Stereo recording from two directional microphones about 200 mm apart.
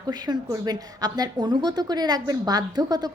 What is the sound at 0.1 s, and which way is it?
A woman's voice, 20° right (ahead or behind).